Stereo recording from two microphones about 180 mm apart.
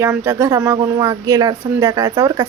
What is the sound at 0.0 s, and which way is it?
A woman's voice, 15° right (ahead or behind).